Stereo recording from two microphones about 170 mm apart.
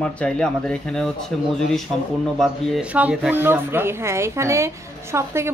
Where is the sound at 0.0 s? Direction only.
5° left (ahead or behind).